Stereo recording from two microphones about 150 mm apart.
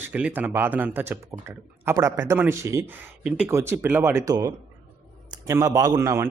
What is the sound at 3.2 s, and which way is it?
A man's voice, 10° right (ahead or behind).